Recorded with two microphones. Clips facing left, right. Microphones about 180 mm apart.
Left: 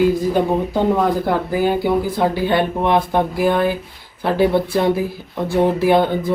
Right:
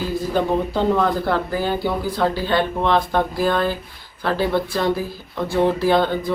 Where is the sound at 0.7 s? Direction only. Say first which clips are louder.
Left 2 dB; 15° left (ahead or behind).